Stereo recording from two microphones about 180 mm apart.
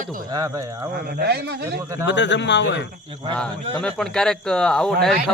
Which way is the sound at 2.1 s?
80° left.